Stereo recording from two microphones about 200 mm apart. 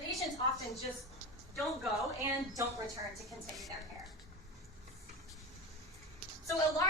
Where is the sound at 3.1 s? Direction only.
Centre (ahead or behind).